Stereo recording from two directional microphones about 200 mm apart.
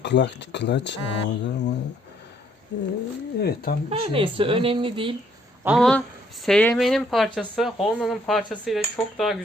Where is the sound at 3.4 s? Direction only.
50° left (ahead or behind).